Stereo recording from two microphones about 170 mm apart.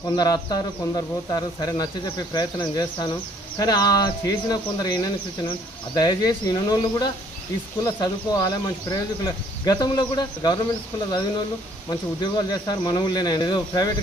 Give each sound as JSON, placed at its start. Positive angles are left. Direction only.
{"t": 0.2, "sound": "speech", "side_deg": 25}
{"t": 11.9, "sound": "speech", "side_deg": 25}